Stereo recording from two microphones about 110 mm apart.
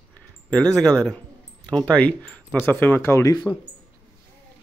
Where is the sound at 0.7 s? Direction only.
5° left (ahead or behind); by 3.3 s 25° left (ahead or behind).